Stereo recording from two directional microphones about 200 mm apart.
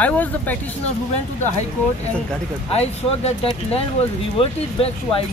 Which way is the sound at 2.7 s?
30° left (ahead or behind).